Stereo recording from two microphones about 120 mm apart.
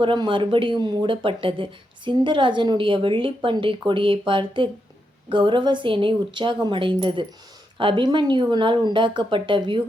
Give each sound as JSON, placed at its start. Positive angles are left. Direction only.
{"t": 0.0, "sound": "speech", "side_deg": -40}